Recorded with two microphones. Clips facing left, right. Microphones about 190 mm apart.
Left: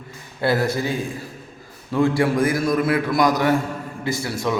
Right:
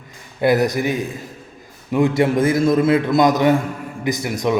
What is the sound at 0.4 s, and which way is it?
A man's voice, 15° right (ahead or behind).